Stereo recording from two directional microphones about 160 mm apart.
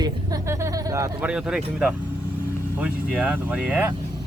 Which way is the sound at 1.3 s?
5° right (ahead or behind).